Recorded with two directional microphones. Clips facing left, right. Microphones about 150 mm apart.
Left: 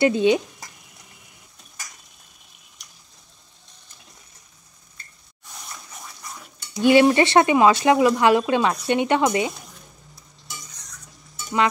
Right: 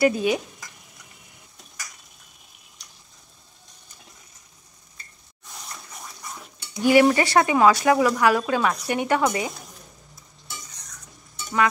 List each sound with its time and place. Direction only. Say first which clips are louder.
0.0 s speech: left 3 dB; 25° left (ahead or behind)
6.8 s speech: left 2 dB; 25° left (ahead or behind)